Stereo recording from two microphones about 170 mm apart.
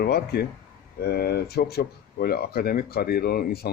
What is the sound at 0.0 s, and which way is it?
Speech, 65° left (ahead or behind).